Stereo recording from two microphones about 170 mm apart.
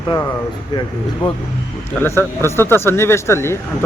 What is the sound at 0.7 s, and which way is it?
Speech, 25° left (ahead or behind).